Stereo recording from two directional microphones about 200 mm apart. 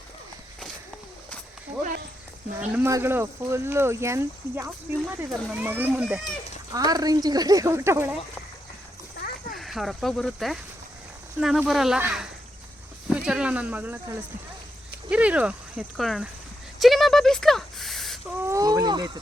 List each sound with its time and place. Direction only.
2.6 s speech: 10° right (ahead or behind)
6.7 s a woman's voice: 20° right (ahead or behind)
9.6 s speech: centre (ahead or behind)
15.1 s speech: 5° right (ahead or behind)
16.8 s a sound: centre (ahead or behind)
18.4 s a sound: 15° right (ahead or behind)